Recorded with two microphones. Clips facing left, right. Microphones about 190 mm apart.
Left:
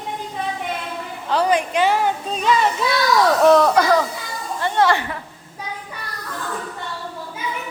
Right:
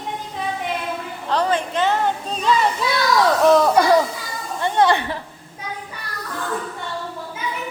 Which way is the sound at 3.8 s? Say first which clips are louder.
Right 1 dB; 15° right (ahead or behind).